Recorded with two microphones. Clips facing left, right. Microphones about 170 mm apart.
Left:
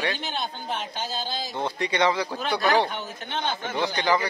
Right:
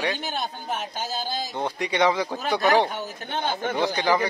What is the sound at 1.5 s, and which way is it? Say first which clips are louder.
Speech: even; 15° right (ahead or behind).